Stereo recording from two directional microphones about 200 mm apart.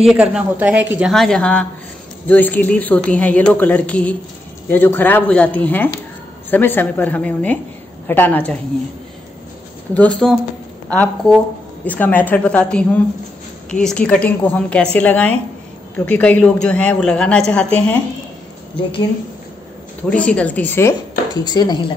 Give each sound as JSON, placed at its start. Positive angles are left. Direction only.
{"t": 0.0, "sound": "a woman's voice", "side_deg": -5}
{"t": 9.9, "sound": "a woman's voice", "side_deg": 5}
{"t": 20.1, "sound": "speech", "side_deg": 5}
{"t": 21.5, "sound": "speech", "side_deg": 20}